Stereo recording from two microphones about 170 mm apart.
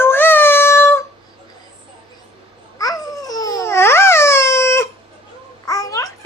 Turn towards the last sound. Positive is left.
turn(degrees=20)  # may be behind; listen again after turning